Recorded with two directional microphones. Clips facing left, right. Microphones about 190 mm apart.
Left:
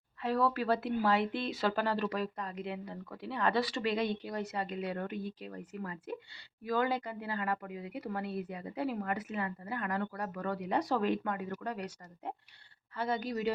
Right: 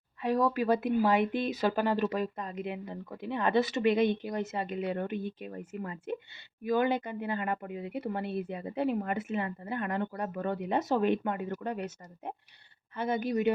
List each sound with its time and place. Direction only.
0.2 s speech: 15° right (ahead or behind)